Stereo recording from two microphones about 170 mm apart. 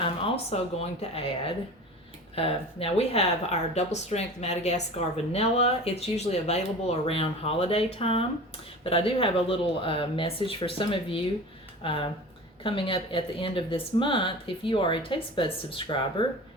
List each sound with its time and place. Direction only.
0.0 s a woman's voice: 35° left (ahead or behind)